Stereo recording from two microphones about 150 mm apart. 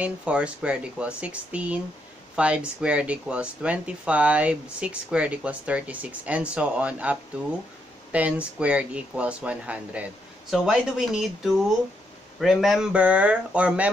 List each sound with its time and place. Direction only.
0.0 s speech: 5° right (ahead or behind)